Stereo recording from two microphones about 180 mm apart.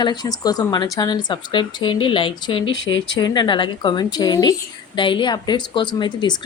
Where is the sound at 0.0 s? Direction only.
25° left (ahead or behind).